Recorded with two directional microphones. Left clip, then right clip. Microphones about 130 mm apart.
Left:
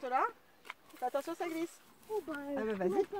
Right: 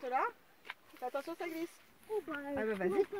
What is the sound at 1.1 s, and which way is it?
Speech, 55° left (ahead or behind).